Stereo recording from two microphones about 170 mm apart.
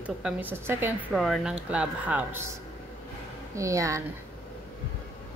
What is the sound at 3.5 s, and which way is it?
Speech, 20° right (ahead or behind).